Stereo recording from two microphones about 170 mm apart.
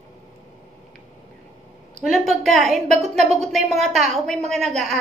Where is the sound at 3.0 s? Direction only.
40° right (ahead or behind).